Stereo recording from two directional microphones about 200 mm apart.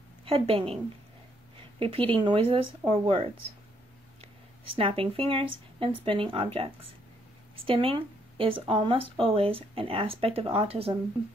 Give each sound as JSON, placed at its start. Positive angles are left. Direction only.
{"t": 0.2, "sound": "a woman's voice", "side_deg": -25}
{"t": 1.8, "sound": "speech", "side_deg": -25}
{"t": 4.7, "sound": "speech", "side_deg": -30}